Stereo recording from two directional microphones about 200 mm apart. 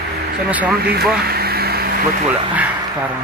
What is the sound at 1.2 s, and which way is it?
Air conditioning, 50° right (ahead or behind).